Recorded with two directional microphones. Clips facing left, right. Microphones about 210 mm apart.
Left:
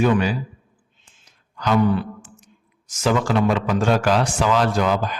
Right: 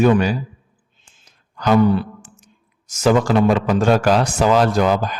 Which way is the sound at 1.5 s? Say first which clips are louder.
Right 4 dB; 45° right (ahead or behind).